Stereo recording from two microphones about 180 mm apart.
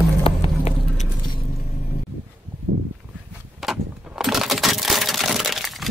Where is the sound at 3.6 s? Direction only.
Centre (ahead or behind).